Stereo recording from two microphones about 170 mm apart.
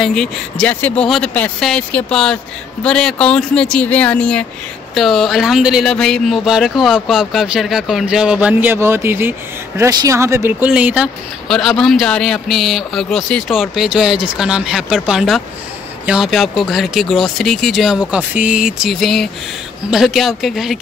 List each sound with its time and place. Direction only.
0.0 s speech: 5° left (ahead or behind)